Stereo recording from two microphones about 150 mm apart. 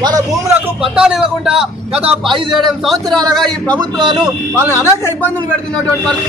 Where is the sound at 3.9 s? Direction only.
30° right (ahead or behind).